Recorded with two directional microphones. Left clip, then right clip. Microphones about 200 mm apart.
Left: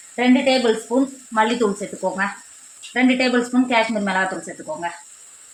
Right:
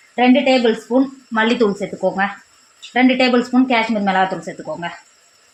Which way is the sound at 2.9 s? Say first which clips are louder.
Right 4 dB; 50° right (ahead or behind).